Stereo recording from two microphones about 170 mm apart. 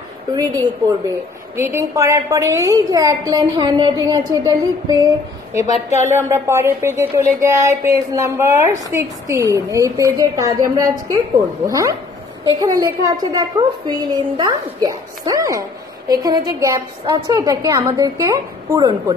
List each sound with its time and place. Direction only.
0.3 s a woman's voice: 25° right (ahead or behind)
1.6 s a woman's voice: 15° right (ahead or behind)